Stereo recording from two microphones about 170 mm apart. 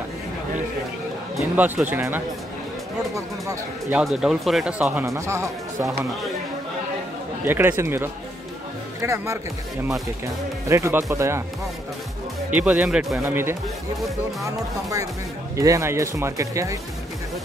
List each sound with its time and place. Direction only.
1.3 s speech: 5° right (ahead or behind)
3.9 s speech: centre (ahead or behind)
5.0 s speech: 15° right (ahead or behind)
7.4 s speech: 15° right (ahead or behind)
12.5 s speech: 10° right (ahead or behind)